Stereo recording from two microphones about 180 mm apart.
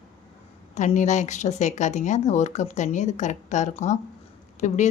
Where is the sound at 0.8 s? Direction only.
40° left (ahead or behind).